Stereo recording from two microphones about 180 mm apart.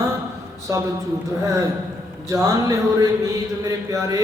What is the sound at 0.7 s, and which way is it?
Speech, 15° right (ahead or behind).